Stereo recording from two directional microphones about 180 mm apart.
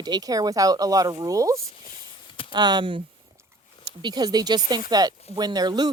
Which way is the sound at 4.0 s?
25° right (ahead or behind).